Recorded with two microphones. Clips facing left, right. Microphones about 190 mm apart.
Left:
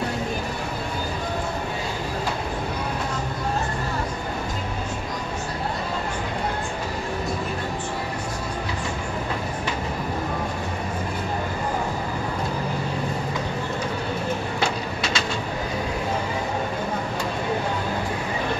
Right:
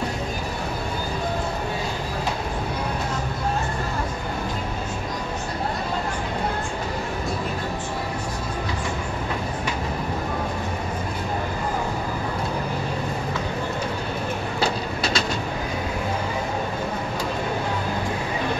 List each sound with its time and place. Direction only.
14.6 s vehicle: 35° right (ahead or behind)